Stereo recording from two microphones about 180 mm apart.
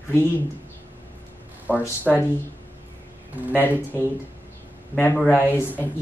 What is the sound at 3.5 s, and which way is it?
Speech, 10° left (ahead or behind).